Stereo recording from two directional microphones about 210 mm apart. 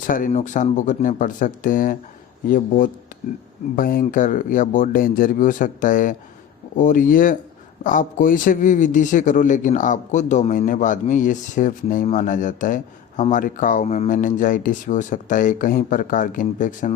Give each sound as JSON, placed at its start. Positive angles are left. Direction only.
{"t": 0.1, "sound": "speech", "side_deg": 35}